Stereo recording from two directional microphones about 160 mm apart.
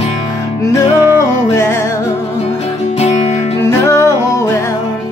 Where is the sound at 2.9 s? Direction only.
40° left (ahead or behind).